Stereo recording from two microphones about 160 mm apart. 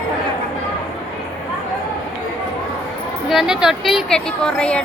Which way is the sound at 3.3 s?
Centre (ahead or behind).